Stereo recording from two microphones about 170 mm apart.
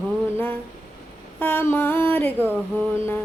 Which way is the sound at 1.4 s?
10° left (ahead or behind).